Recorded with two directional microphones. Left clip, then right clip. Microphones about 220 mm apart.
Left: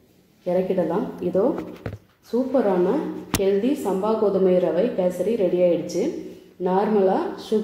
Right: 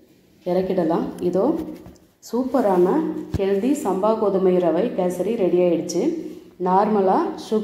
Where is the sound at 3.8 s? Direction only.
25° right (ahead or behind).